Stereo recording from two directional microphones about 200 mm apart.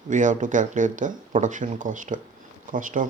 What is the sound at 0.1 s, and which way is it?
Speech, 40° right (ahead or behind).